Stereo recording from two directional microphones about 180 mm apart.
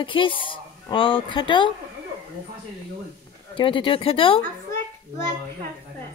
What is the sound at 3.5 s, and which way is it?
Speech, 30° left (ahead or behind).